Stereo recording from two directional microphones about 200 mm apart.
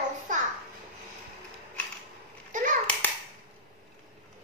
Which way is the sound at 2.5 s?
40° right (ahead or behind).